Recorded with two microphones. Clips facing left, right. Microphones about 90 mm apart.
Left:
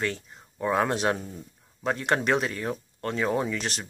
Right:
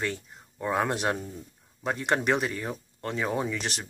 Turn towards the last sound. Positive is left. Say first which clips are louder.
# left 1 dB
turn(degrees=-15)  # may be behind; listen again after turning